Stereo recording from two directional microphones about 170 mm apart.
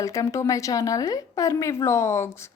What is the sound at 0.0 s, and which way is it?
Speech, 20° left (ahead or behind).